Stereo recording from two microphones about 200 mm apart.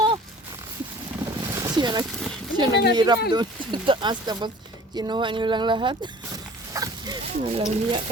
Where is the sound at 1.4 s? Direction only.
20° right (ahead or behind).